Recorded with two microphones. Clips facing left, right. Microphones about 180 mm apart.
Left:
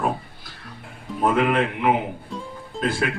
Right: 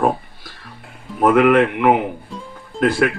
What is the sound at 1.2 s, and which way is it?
Speech, 80° right.